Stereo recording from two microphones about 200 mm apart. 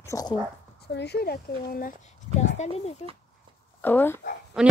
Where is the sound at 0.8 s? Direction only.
55° left (ahead or behind); by 2.9 s 35° left (ahead or behind).